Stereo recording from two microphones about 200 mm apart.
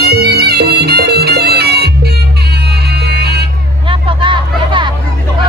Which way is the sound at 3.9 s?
25° right (ahead or behind).